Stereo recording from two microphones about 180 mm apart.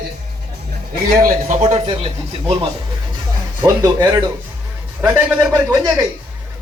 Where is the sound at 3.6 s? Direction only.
20° right (ahead or behind).